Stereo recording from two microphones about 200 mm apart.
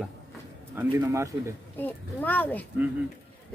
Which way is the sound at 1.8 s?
10° left (ahead or behind).